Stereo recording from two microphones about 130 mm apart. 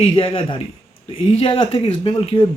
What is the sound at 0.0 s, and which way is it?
Speech, 50° left (ahead or behind).